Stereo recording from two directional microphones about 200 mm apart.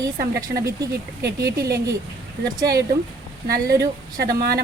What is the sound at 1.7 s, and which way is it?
Speech, 15° right (ahead or behind).